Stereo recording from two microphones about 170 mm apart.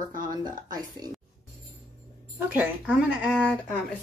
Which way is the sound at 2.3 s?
10° right (ahead or behind).